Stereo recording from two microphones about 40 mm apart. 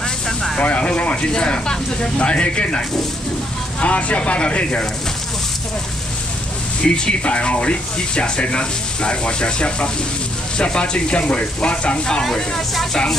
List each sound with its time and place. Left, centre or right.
0.6 s speech: left
3.8 s speech: left
6.8 s speech: left
12.2 s speech: centre